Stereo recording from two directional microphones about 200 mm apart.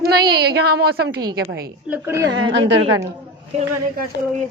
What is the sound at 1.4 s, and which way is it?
Speech, 65° right (ahead or behind).